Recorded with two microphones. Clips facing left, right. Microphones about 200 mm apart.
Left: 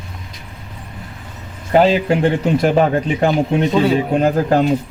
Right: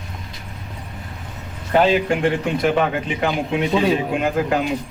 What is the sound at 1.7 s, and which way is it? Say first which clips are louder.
Speech: left 3 dB; 35° left (ahead or behind).